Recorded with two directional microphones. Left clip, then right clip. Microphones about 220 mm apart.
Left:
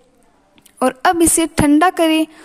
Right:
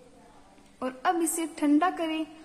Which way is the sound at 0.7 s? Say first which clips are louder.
Left 13 dB; 45° left (ahead or behind).